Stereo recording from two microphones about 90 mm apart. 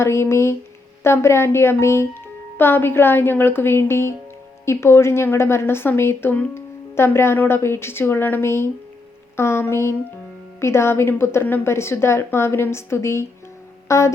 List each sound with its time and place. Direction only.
0.0 s a woman's voice: 30° left (ahead or behind)
13.8 s music: 35° left (ahead or behind)